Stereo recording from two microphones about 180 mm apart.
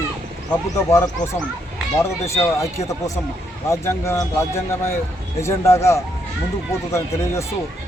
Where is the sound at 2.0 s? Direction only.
15° left (ahead or behind).